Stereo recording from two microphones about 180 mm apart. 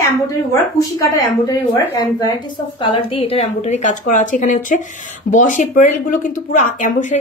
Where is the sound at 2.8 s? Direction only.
30° left (ahead or behind).